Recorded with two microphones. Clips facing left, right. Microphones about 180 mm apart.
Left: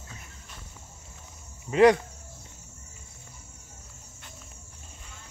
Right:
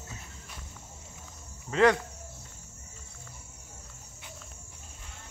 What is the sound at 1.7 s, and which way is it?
Speech, 15° left (ahead or behind).